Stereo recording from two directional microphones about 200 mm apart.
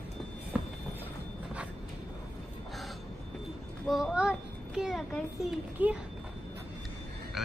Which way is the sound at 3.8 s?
Centre (ahead or behind).